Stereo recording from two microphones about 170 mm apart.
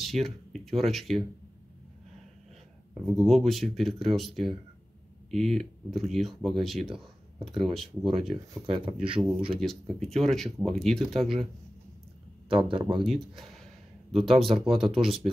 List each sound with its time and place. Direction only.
0.0 s speech: centre (ahead or behind)
3.1 s speech: centre (ahead or behind)
8.1 s speech: 35° right (ahead or behind)
9.6 s speech: centre (ahead or behind)
12.4 s speech: 30° right (ahead or behind)
13.0 s speech: centre (ahead or behind)
14.8 s speech: 30° right (ahead or behind)